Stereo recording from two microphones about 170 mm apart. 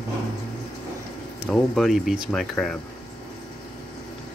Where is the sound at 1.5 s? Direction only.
Centre (ahead or behind).